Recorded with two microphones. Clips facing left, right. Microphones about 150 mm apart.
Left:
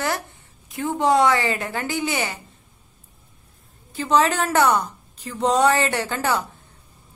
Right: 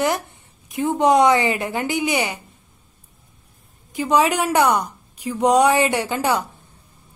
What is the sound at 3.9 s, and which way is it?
A woman's voice, 15° right (ahead or behind).